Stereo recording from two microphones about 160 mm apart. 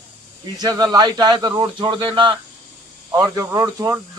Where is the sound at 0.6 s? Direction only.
25° right (ahead or behind).